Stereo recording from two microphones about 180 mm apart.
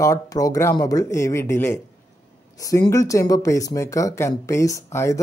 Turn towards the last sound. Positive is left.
turn(degrees=15)  # may be behind; listen again after turning